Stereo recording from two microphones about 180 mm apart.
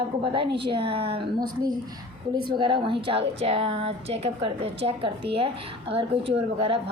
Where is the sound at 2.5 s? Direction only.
30° right (ahead or behind).